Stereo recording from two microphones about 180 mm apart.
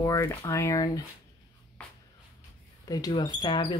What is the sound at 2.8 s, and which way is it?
Speech, 20° left (ahead or behind).